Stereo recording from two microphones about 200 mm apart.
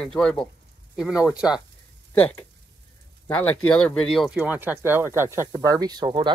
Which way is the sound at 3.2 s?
5° left (ahead or behind).